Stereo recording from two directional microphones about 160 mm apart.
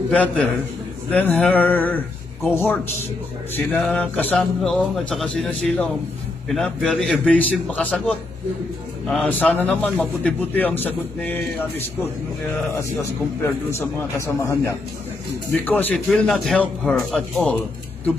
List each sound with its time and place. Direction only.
0.1 s a man's voice: 10° left (ahead or behind)
9.0 s a man's voice: 5° left (ahead or behind)